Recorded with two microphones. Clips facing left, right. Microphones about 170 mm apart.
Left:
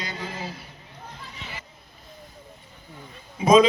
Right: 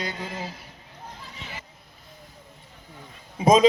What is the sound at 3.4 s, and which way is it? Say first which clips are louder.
Speech: left 2 dB; 40° right (ahead or behind).